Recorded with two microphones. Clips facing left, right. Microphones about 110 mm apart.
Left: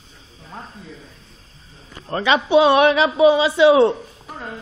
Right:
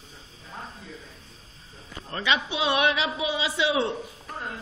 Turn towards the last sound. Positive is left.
turn(degrees=50)  # may be behind; listen again after turning